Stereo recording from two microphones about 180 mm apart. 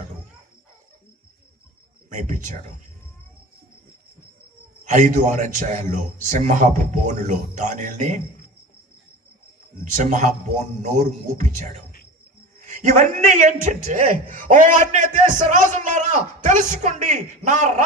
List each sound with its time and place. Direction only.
2.0 s a man's voice: 45° right (ahead or behind)
4.9 s a man's voice: 45° right (ahead or behind)
9.9 s a man's voice: 45° right (ahead or behind)